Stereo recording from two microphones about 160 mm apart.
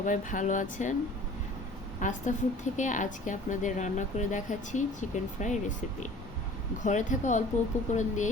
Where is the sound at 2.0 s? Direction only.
50° left (ahead or behind).